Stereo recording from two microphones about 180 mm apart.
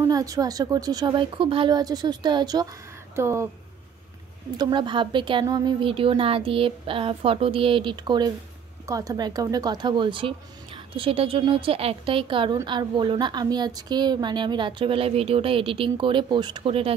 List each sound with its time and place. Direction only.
0.0 s speech: 20° right (ahead or behind)
4.6 s speech: 25° right (ahead or behind)